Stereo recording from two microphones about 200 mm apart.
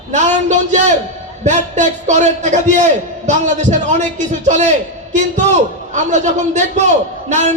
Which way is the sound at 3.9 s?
35° right (ahead or behind).